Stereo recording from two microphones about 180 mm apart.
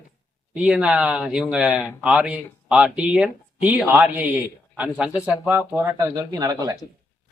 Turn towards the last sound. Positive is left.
turn(degrees=-20)  # may be behind; listen again after turning